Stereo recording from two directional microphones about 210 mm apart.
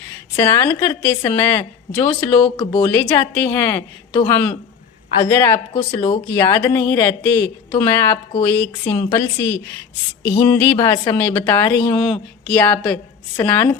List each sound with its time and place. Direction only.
0.3 s a woman's voice: 15° left (ahead or behind)
2.6 s a woman's voice: 20° left (ahead or behind)